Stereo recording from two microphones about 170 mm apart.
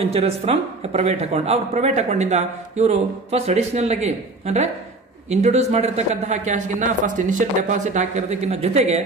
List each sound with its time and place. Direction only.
0.0 s speech: 35° right (ahead or behind)